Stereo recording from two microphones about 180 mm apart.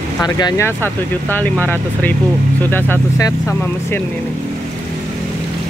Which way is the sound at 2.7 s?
10° left (ahead or behind).